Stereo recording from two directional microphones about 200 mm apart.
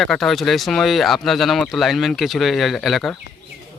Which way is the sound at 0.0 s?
Centre (ahead or behind).